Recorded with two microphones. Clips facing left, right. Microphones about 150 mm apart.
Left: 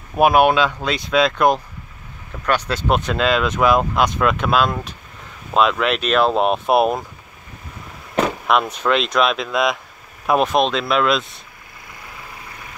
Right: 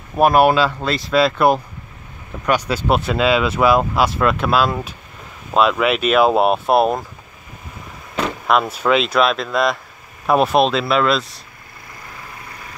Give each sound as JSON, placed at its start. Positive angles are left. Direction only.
{"t": 0.1, "sound": "speech", "side_deg": 0}
{"t": 8.5, "sound": "speech", "side_deg": -5}